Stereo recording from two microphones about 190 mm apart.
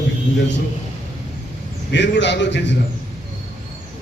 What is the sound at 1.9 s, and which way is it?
Speech, 65° left (ahead or behind).